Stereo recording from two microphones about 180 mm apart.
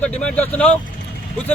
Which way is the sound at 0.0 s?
5° left (ahead or behind).